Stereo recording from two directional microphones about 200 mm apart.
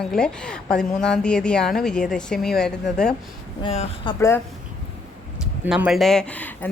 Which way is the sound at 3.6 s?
30° left (ahead or behind).